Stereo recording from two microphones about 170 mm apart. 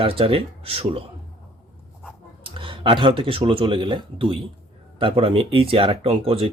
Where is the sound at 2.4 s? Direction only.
30° right (ahead or behind).